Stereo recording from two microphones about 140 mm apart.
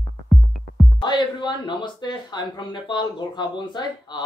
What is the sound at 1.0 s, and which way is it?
Speech, 35° left (ahead or behind).